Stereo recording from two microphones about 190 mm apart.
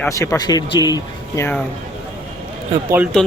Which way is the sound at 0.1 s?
15° left (ahead or behind).